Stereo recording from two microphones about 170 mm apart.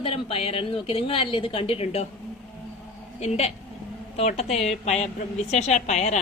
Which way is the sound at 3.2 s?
40° left (ahead or behind).